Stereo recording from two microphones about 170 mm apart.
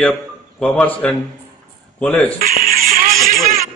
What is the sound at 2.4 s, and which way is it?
Music, 55° right (ahead or behind).